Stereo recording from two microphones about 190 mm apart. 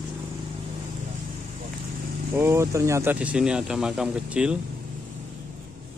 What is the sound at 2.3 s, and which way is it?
Speech, 15° right (ahead or behind).